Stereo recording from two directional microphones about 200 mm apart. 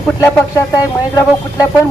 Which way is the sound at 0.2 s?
15° left (ahead or behind).